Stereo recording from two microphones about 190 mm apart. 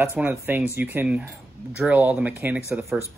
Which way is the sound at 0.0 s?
10° right (ahead or behind).